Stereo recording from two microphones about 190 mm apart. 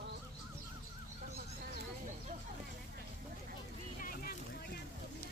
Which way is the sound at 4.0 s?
50° left (ahead or behind).